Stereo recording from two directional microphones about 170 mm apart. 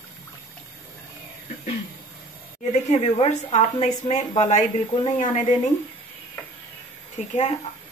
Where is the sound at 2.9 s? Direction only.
40° left (ahead or behind).